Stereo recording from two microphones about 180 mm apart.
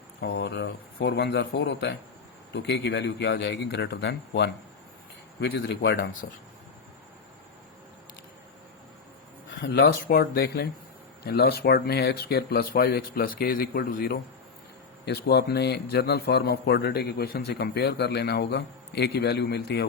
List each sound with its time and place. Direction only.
0.2 s a man's voice: 65° left (ahead or behind)
5.4 s a man's voice: 80° left
9.5 s a man's voice: 90° left; by 14.2 s 55° left (ahead or behind)
15.0 s a man's voice: 65° left (ahead or behind)